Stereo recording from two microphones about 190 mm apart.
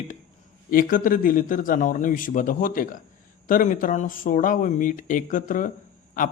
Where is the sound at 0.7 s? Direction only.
45° left (ahead or behind).